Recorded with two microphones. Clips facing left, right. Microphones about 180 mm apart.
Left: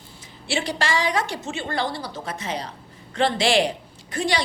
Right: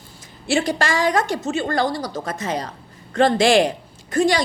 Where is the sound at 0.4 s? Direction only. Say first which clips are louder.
Right 5 dB; 45° right (ahead or behind).